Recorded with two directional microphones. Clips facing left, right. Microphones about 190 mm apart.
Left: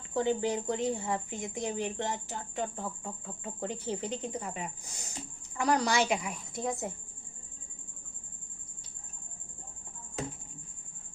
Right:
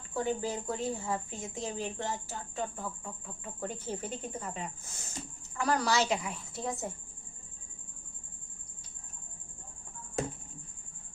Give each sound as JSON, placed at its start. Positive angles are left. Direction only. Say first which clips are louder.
{"t": 0.1, "sound": "a woman's voice", "louder": "left 4 dB", "side_deg": 20}
{"t": 3.7, "sound": "speech", "louder": "left 4 dB", "side_deg": 15}